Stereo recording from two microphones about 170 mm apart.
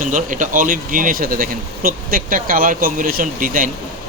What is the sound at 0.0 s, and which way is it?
A man's voice, 50° right (ahead or behind).